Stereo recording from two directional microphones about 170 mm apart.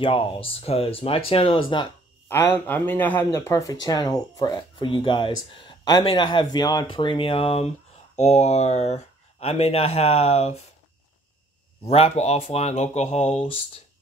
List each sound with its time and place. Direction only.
0.0 s speech: 30° left (ahead or behind)
2.2 s speech: 15° left (ahead or behind); by 10.6 s 40° left (ahead or behind)
11.8 s speech: 35° left (ahead or behind)